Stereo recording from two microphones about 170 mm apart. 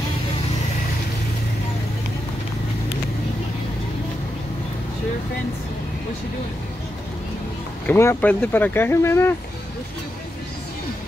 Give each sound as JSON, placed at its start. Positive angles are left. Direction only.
{"t": 7.8, "sound": "speech", "side_deg": 15}